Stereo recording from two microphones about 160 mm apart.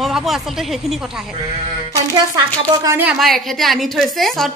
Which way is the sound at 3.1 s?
Centre (ahead or behind).